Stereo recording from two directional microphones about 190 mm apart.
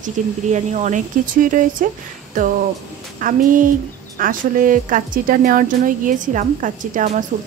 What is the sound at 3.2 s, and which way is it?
Speech, 45° right (ahead or behind).